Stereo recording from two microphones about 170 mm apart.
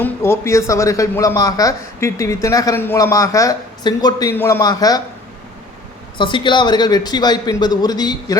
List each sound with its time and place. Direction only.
0.0 s a man's voice: 15° left (ahead or behind)
6.1 s a man's voice: 30° left (ahead or behind)